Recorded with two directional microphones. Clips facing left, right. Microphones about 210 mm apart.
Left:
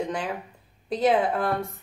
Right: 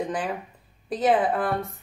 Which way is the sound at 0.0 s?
Centre (ahead or behind).